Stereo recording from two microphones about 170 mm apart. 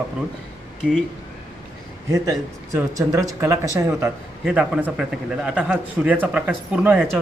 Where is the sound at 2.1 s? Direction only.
20° right (ahead or behind).